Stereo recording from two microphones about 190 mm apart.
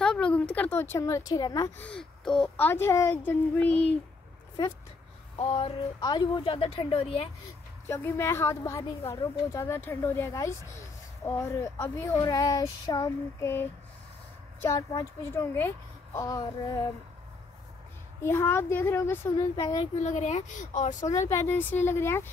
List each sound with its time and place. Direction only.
0.0 s a woman's voice: 5° left (ahead or behind); by 1.7 s 20° left (ahead or behind)
1.8 s a child's voice: 5° left (ahead or behind)
5.4 s a woman's voice: 30° left (ahead or behind)
7.9 s a child's voice: 15° left (ahead or behind)
18.2 s a child's voice: 10° left (ahead or behind)
19.8 s speech: 35° left (ahead or behind)
21.0 s a child's voice: 15° left (ahead or behind)